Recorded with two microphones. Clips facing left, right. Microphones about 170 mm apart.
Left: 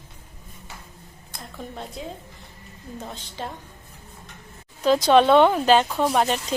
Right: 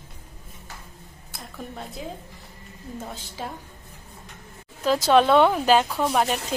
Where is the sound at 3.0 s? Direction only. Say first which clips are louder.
Left 2 dB; 5° right (ahead or behind).